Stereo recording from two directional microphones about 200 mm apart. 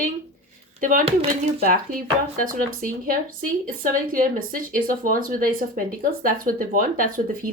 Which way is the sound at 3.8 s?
45° right (ahead or behind).